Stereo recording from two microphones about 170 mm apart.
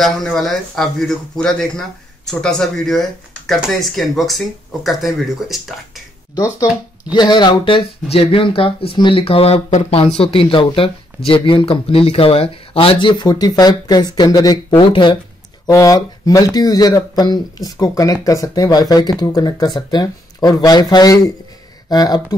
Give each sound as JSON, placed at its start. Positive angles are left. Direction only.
{"t": 0.0, "sound": "speech", "side_deg": 0}
{"t": 6.3, "sound": "speech", "side_deg": 20}